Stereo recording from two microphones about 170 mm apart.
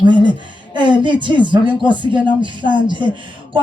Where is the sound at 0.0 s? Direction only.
25° right (ahead or behind).